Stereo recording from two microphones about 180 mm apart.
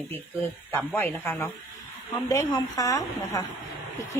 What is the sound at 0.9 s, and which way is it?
Speech, 10° left (ahead or behind).